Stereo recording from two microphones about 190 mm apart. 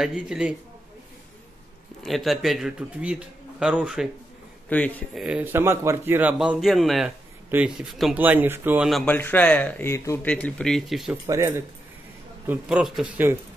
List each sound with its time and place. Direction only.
0.0 s a man's voice: 5° right (ahead or behind)
2.0 s a man's voice: centre (ahead or behind)
4.6 s speech: 10° left (ahead or behind)
5.2 s a man's voice: 5° right (ahead or behind)
9.1 s speech: 10° left (ahead or behind)
11.2 s speech: 15° right (ahead or behind)
12.4 s a man's voice: 5° right (ahead or behind)